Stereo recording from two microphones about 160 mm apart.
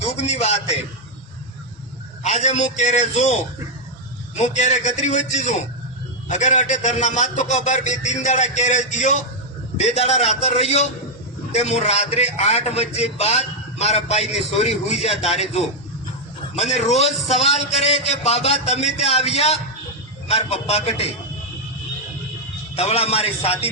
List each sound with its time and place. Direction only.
0.0 s a man's voice: 45° left (ahead or behind)
2.2 s a man's voice: 45° left (ahead or behind)
4.4 s a man's voice: 45° left (ahead or behind)
22.7 s a man's voice: 40° left (ahead or behind)